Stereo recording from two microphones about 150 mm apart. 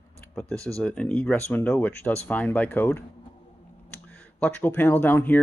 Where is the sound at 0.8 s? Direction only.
10° left (ahead or behind).